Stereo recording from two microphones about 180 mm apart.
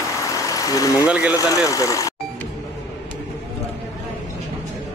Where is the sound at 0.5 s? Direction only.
20° left (ahead or behind).